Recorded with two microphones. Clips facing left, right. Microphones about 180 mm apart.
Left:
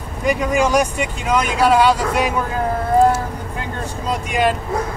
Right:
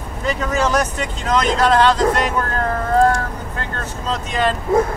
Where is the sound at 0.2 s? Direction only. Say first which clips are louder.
Left 3 dB; 15° left (ahead or behind).